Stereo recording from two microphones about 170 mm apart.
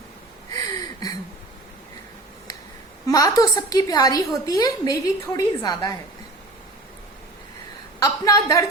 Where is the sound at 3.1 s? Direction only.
20° left (ahead or behind).